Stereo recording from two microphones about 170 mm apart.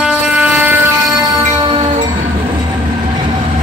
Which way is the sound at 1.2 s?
25° right (ahead or behind).